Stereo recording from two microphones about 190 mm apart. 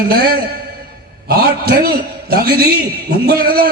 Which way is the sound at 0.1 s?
55° right (ahead or behind).